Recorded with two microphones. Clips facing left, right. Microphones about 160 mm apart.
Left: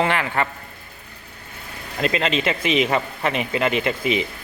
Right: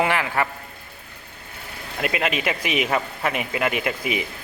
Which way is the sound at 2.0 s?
10° right (ahead or behind).